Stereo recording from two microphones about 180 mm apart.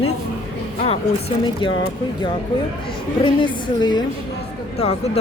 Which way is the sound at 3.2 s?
25° left (ahead or behind).